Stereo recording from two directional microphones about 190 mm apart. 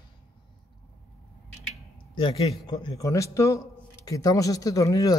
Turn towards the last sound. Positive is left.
turn(degrees=20)  # may be behind; listen again after turning